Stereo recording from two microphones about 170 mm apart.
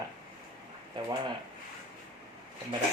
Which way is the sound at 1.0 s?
25° right (ahead or behind).